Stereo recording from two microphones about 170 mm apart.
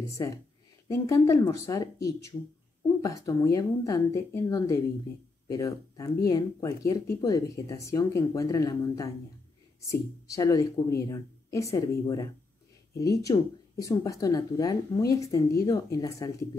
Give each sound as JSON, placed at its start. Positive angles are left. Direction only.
{"t": 0.8, "sound": "speech", "side_deg": 20}
{"t": 3.0, "sound": "speech", "side_deg": 20}